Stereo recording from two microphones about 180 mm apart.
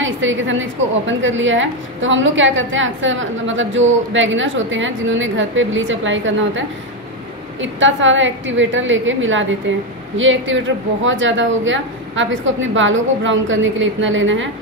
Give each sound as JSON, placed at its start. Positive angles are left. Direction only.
{"t": 0.0, "sound": "a woman's voice", "side_deg": -90}
{"t": 7.6, "sound": "a woman's voice", "side_deg": -90}